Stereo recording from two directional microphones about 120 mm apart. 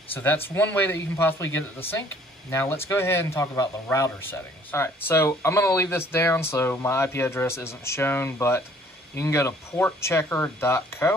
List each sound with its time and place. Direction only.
0.1 s a man's voice: 15° left (ahead or behind)